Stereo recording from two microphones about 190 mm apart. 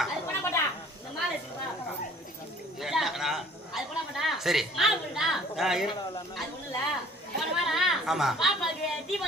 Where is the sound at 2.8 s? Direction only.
Centre (ahead or behind).